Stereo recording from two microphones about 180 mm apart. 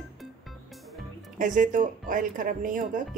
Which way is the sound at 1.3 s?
45° right (ahead or behind).